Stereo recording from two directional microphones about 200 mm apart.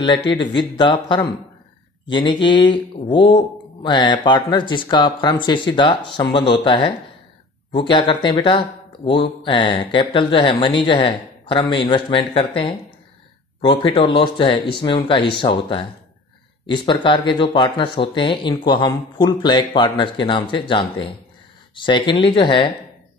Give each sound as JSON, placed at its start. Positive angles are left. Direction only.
{"t": 0.6, "sound": "speech", "side_deg": 20}
{"t": 2.0, "sound": "speech", "side_deg": 25}
{"t": 7.9, "sound": "speech", "side_deg": 25}